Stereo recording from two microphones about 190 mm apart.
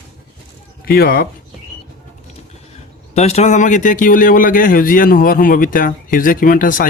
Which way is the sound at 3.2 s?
35° left (ahead or behind).